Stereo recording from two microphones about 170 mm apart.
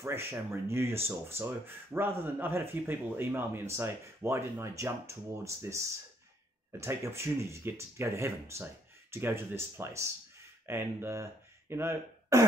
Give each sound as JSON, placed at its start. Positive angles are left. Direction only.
{"t": 0.0, "sound": "speech", "side_deg": -15}